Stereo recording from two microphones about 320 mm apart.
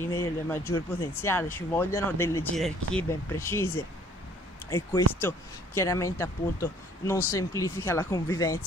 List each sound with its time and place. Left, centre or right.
0.0 s speech: centre